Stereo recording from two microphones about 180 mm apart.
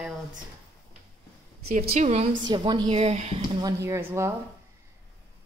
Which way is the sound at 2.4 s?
25° right (ahead or behind).